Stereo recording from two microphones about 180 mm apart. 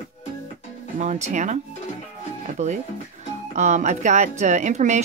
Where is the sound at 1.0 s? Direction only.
40° right (ahead or behind).